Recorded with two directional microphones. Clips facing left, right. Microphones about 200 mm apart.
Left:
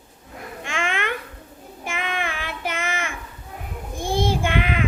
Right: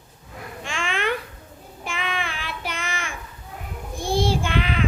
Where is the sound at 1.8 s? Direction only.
50° left (ahead or behind).